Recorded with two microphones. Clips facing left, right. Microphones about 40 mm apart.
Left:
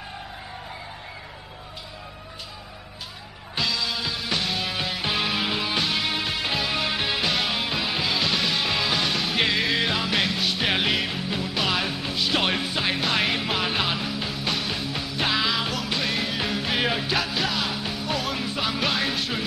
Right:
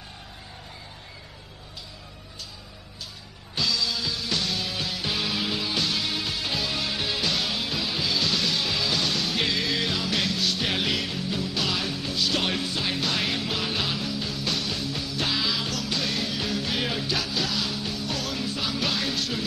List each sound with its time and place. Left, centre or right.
3.5 s music: left